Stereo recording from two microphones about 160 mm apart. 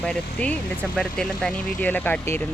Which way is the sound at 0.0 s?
5° left (ahead or behind).